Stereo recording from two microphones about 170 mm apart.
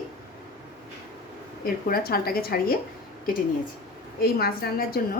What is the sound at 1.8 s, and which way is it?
Speech, 60° left (ahead or behind).